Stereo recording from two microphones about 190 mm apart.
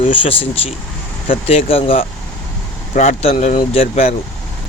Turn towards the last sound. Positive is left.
turn(degrees=35)  # may be behind; listen again after turning